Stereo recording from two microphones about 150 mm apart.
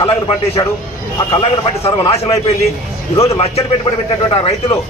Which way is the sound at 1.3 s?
40° left (ahead or behind).